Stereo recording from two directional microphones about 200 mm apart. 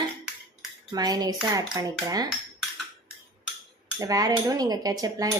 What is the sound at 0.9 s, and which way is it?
Speech, 20° right (ahead or behind).